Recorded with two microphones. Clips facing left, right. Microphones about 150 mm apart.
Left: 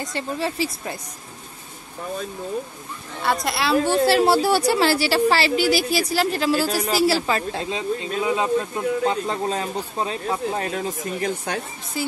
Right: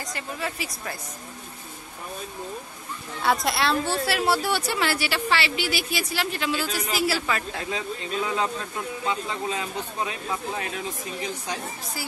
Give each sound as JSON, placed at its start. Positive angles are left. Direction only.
{"t": 0.0, "sound": "speech", "side_deg": 30}
{"t": 3.2, "sound": "a woman's voice", "side_deg": 0}
{"t": 4.0, "sound": "a woman's voice", "side_deg": 30}
{"t": 9.0, "sound": "speech", "side_deg": 45}
{"t": 12.0, "sound": "speech", "side_deg": 25}